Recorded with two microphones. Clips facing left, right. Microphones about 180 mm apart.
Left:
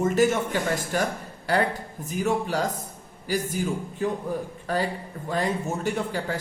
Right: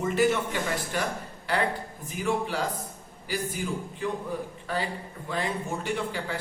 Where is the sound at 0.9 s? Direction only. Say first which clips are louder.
Left 4 dB; 45° left (ahead or behind).